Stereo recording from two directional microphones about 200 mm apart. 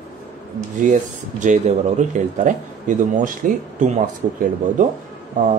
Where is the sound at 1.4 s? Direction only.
35° right (ahead or behind).